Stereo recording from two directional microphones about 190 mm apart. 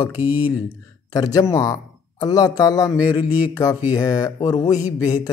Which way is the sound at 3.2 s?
10° right (ahead or behind).